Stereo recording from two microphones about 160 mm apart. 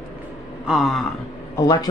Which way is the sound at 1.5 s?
25° left (ahead or behind).